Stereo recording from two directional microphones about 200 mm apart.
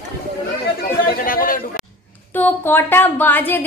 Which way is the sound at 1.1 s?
45° left (ahead or behind).